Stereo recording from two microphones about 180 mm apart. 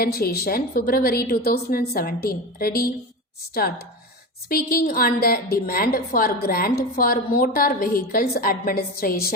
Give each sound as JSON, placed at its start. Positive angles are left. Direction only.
{"t": 0.0, "sound": "a woman's voice", "side_deg": 55}
{"t": 4.4, "sound": "a woman's voice", "side_deg": 55}